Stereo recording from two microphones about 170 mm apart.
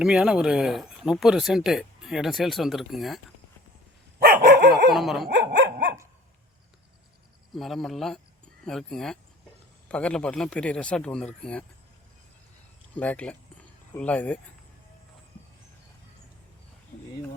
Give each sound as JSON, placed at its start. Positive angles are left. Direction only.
{"t": 0.0, "sound": "speech", "side_deg": -5}
{"t": 4.2, "sound": "dog", "side_deg": -60}
{"t": 4.9, "sound": "speech", "side_deg": 0}
{"t": 5.3, "sound": "dog", "side_deg": -90}
{"t": 7.5, "sound": "speech", "side_deg": 0}
{"t": 13.0, "sound": "speech", "side_deg": 10}